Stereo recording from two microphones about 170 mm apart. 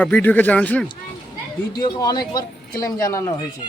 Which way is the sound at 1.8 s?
25° left (ahead or behind).